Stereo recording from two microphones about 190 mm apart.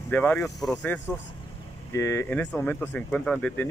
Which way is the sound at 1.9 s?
15° left (ahead or behind).